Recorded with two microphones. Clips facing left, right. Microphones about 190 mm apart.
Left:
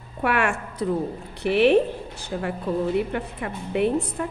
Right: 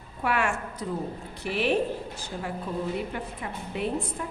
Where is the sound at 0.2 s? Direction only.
65° left (ahead or behind).